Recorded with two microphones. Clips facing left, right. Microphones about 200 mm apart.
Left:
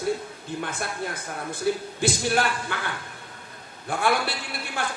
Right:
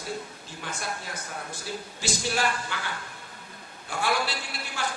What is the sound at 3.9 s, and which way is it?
Speech, 55° left (ahead or behind).